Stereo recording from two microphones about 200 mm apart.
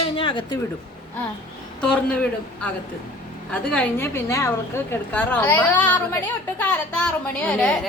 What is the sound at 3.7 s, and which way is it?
A woman's voice, 10° left (ahead or behind).